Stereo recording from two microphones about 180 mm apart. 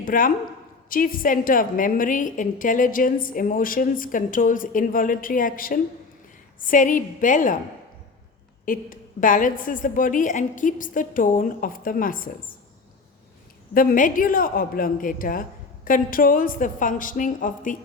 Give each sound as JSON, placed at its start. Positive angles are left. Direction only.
{"t": 0.0, "sound": "a woman's voice", "side_deg": 50}
{"t": 8.6, "sound": "a woman's voice", "side_deg": 50}
{"t": 13.7, "sound": "a woman's voice", "side_deg": 50}